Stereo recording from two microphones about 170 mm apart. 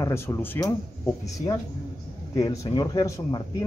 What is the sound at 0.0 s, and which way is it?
Speech, 15° left (ahead or behind).